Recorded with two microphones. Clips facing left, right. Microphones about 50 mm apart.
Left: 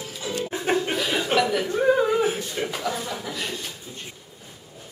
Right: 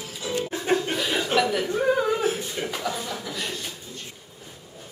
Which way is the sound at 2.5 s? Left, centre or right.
Centre.